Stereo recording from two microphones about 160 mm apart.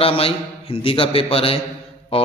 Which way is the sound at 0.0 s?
35° left (ahead or behind).